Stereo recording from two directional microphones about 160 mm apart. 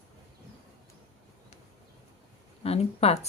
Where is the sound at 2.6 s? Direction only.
40° left (ahead or behind).